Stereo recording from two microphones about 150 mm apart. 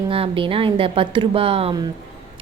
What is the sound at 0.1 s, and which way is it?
A woman's voice, 35° right (ahead or behind).